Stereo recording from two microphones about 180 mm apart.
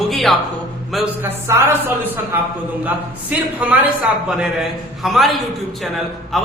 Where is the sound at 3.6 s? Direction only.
10° right (ahead or behind).